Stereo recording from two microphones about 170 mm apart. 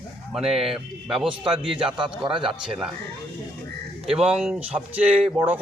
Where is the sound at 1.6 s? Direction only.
30° right (ahead or behind).